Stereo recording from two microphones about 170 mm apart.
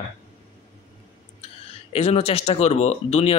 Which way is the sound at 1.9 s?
35° left (ahead or behind).